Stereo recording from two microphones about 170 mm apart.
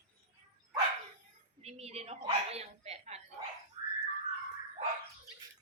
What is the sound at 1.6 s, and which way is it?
Bow-wow, 40° right (ahead or behind).